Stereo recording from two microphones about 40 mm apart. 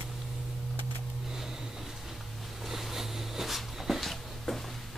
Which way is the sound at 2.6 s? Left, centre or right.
Centre.